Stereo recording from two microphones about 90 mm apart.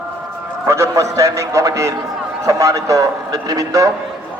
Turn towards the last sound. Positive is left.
turn(degrees=-40)  # may be behind; listen again after turning